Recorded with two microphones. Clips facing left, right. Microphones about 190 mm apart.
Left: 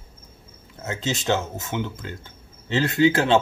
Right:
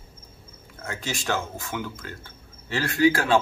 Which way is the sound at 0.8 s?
20° left (ahead or behind).